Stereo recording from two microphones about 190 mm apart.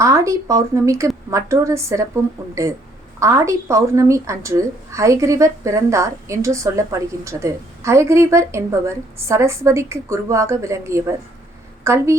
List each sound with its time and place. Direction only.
0.0 s a woman's voice: 15° right (ahead or behind)